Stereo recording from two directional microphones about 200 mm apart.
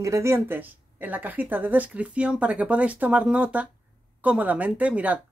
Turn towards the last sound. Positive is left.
turn(degrees=-5)  # may be behind; listen again after turning